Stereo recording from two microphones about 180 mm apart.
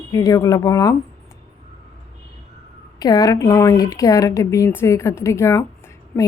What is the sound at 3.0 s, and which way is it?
A woman's voice, 20° left (ahead or behind).